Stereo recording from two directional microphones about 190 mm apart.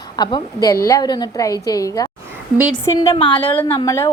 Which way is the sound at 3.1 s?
30° left (ahead or behind).